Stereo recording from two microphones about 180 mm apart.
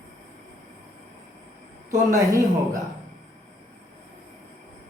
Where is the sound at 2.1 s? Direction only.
20° right (ahead or behind).